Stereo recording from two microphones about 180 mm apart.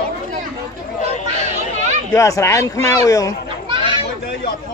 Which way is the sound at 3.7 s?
25° right (ahead or behind).